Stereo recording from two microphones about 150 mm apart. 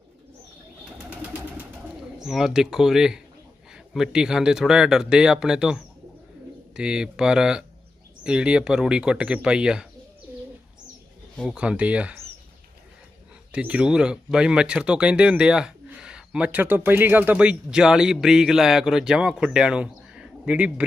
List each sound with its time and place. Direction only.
1.1 s a sound: 10° right (ahead or behind)
2.2 s speech: 5° right (ahead or behind)
11.5 s speech: 10° right (ahead or behind)
13.5 s speech: 10° right (ahead or behind)